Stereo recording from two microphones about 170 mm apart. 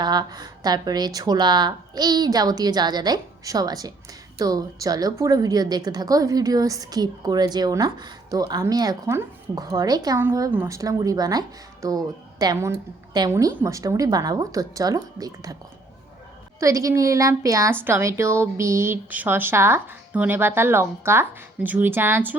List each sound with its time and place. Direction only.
0.0 s a woman's voice: 25° right (ahead or behind)
16.6 s a woman's voice: 20° right (ahead or behind)